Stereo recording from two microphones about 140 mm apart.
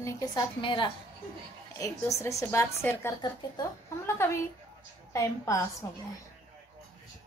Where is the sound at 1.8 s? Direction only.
25° left (ahead or behind).